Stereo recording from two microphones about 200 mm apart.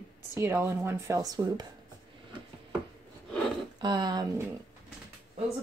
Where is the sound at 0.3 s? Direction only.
10° right (ahead or behind).